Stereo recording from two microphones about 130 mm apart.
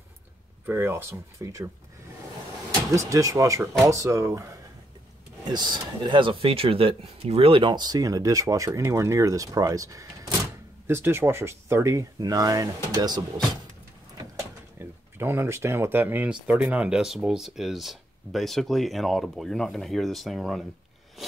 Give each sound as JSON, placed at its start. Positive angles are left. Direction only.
{"t": 0.7, "sound": "speech", "side_deg": -15}
{"t": 2.9, "sound": "speech", "side_deg": -25}
{"t": 5.5, "sound": "speech", "side_deg": -35}
{"t": 14.8, "sound": "speech", "side_deg": -15}